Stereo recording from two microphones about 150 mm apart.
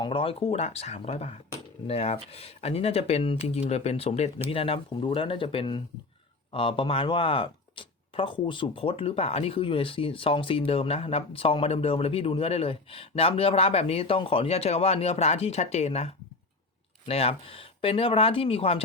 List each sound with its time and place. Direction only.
0.0 s speech: 35° left (ahead or behind)